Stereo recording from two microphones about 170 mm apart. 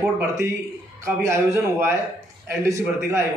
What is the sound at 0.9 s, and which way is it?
A man's voice, 15° right (ahead or behind).